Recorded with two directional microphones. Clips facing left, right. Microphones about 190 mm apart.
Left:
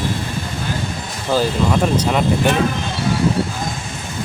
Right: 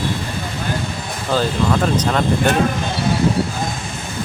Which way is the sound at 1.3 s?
10° left (ahead or behind).